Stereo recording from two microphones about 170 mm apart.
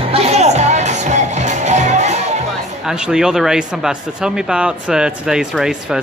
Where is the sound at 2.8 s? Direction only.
5° right (ahead or behind).